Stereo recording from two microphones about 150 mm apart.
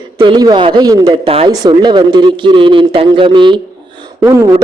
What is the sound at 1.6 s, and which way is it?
A man's voice, 30° right (ahead or behind).